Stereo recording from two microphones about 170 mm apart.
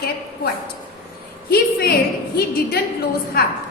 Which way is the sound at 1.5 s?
65° left (ahead or behind).